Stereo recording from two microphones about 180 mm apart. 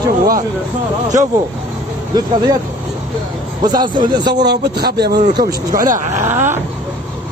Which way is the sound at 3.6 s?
25° right (ahead or behind).